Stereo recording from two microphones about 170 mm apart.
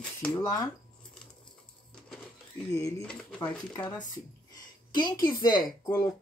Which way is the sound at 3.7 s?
25° left (ahead or behind).